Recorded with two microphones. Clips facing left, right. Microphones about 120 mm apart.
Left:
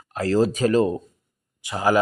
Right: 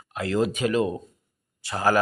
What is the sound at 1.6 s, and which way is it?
Speech, 15° left (ahead or behind).